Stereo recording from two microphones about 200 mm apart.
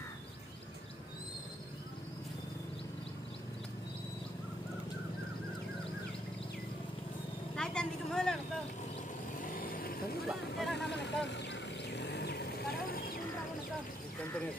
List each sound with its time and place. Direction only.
7.5 s vehicle: 5° left (ahead or behind)
9.4 s vehicle: 45° left (ahead or behind)
10.2 s vehicle: centre (ahead or behind)
11.2 s vehicle: 60° left (ahead or behind)